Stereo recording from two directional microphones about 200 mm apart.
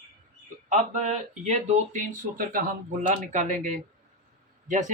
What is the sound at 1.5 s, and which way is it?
Speech, 35° right (ahead or behind).